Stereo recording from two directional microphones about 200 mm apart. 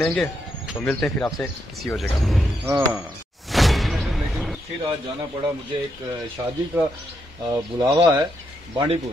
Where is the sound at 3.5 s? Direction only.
Centre (ahead or behind).